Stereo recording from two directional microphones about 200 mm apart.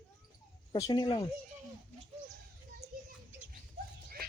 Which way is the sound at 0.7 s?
20° left (ahead or behind).